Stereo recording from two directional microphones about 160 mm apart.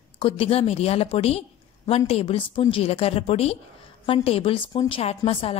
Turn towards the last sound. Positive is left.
turn(degrees=35)  # may be behind; listen again after turning